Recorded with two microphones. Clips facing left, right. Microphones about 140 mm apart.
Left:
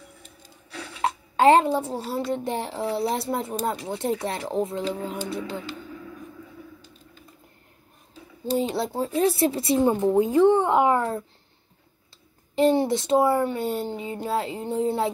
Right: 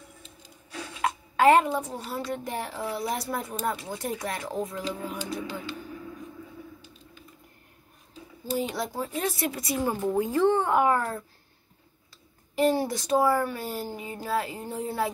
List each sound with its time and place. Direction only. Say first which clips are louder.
1.0 s a woman's voice: left 2 dB; 30° left (ahead or behind)
8.5 s a woman's voice: left 5 dB; 30° left (ahead or behind)
12.5 s a woman's voice: left 4 dB; 25° left (ahead or behind)